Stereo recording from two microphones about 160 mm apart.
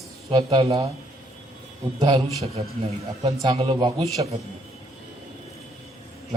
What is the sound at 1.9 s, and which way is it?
A man's voice, 30° right (ahead or behind).